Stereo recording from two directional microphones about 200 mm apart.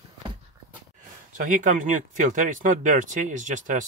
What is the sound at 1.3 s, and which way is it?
Speech, 40° right (ahead or behind).